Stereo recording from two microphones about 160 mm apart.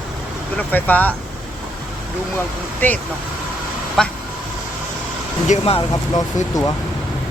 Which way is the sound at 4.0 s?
5° left (ahead or behind).